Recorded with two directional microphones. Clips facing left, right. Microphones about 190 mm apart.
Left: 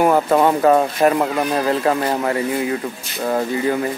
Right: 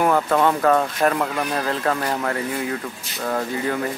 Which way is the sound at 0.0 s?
15° left (ahead or behind).